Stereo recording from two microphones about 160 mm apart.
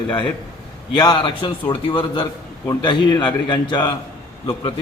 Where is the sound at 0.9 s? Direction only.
30° left (ahead or behind).